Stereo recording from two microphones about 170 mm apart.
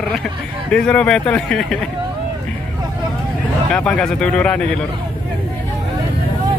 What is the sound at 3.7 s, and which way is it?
Speech, 5° left (ahead or behind).